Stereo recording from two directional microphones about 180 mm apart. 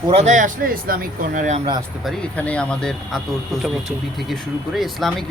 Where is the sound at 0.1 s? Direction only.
40° right (ahead or behind).